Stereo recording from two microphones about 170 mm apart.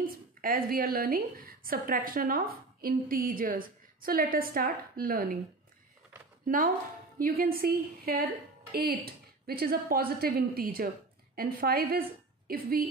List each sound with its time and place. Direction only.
0.0 s a woman's voice: 55° right (ahead or behind)
6.4 s a woman's voice: 55° right (ahead or behind)